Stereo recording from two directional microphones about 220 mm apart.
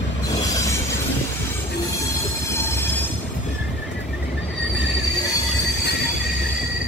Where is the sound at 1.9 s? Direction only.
10° left (ahead or behind).